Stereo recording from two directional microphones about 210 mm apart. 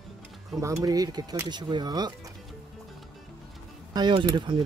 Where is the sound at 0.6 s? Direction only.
15° right (ahead or behind).